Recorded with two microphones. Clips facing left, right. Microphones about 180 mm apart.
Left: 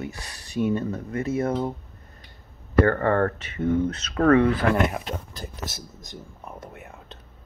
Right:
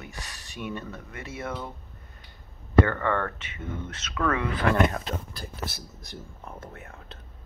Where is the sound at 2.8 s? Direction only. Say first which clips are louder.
Left 7 dB; 45° left (ahead or behind).